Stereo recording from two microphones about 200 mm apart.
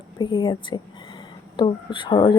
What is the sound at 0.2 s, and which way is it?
Speech, 25° left (ahead or behind).